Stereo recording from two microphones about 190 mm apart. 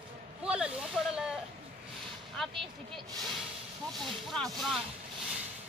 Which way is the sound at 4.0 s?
Centre (ahead or behind).